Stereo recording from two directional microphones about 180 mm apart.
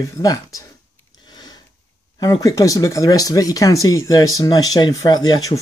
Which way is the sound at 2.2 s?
20° left (ahead or behind).